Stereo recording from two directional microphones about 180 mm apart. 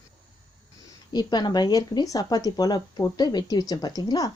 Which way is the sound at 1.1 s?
25° left (ahead or behind).